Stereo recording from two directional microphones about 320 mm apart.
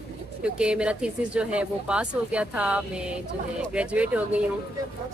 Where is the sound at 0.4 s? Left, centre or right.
Centre.